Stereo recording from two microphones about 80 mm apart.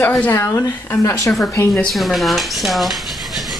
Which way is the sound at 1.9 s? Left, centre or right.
Centre.